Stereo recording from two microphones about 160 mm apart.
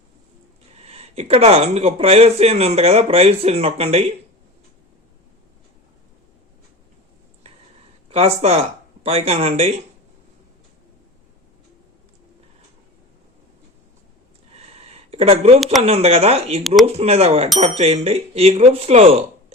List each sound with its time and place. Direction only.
0.8 s speech: 40° right (ahead or behind)
8.1 s speech: 40° right (ahead or behind)
14.5 s a sound: 40° right (ahead or behind)
15.8 s speech: 40° right (ahead or behind)